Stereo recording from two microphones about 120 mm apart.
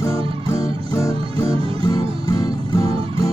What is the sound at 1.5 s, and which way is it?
Music, 50° right (ahead or behind).